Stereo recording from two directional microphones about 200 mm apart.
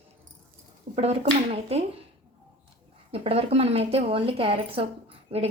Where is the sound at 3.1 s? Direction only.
30° right (ahead or behind).